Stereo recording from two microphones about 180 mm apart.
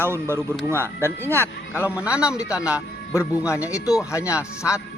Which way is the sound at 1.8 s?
5° right (ahead or behind).